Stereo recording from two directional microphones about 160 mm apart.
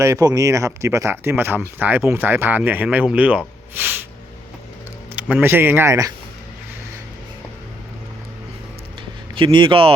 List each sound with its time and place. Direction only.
0.0 s speech: 20° right (ahead or behind)
5.1 s speech: 10° right (ahead or behind)
9.3 s speech: 30° right (ahead or behind)